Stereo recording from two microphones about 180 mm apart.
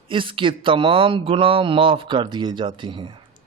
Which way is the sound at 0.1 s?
30° right (ahead or behind).